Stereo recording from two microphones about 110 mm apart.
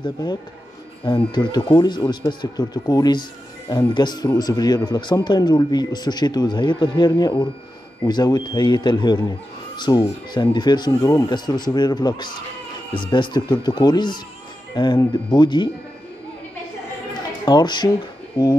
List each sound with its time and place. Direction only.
0.0 s speech: 40° left (ahead or behind)
10.9 s speech: 30° left (ahead or behind)
17.5 s speech: 40° left (ahead or behind)